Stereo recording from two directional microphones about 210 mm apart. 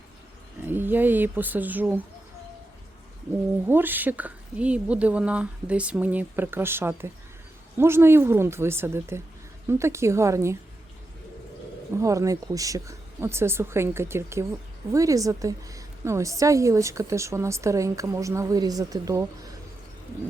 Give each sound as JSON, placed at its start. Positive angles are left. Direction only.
{"t": 0.6, "sound": "a woman's voice", "side_deg": -10}
{"t": 3.7, "sound": "a woman's voice", "side_deg": -10}
{"t": 11.9, "sound": "a woman's voice", "side_deg": -15}